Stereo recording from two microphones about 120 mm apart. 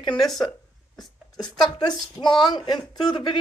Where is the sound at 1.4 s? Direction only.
35° left (ahead or behind).